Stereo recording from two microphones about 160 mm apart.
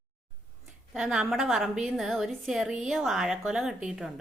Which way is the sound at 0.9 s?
5° right (ahead or behind).